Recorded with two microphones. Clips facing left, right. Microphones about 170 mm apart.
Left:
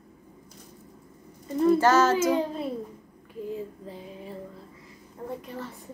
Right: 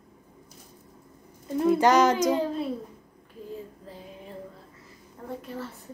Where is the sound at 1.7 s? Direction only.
15° right (ahead or behind).